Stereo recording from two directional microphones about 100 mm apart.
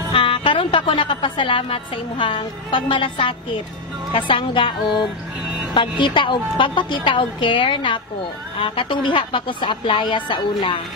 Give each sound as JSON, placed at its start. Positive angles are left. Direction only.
{"t": 0.1, "sound": "a woman's voice", "side_deg": 60}